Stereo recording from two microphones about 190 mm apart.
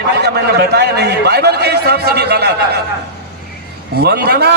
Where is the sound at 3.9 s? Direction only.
55° right (ahead or behind).